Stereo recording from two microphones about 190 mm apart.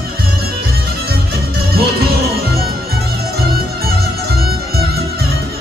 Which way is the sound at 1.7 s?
55° right (ahead or behind).